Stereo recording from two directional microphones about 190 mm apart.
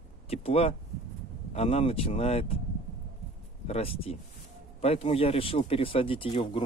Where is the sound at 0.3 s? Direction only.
30° left (ahead or behind).